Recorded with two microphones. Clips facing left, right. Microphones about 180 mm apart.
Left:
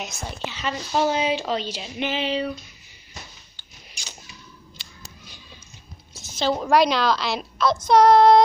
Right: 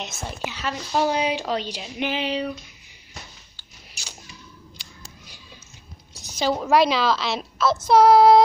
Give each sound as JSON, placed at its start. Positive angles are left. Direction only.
{"t": 0.0, "sound": "a woman's voice", "side_deg": 0}
{"t": 3.5, "sound": "a sound", "side_deg": -10}
{"t": 6.3, "sound": "a woman's voice", "side_deg": -5}